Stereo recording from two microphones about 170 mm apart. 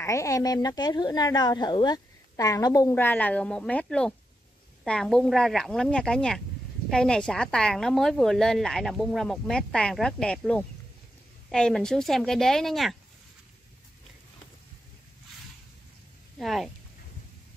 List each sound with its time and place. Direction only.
0.0 s speech: 20° left (ahead or behind); by 12.9 s centre (ahead or behind)
16.3 s speech: centre (ahead or behind)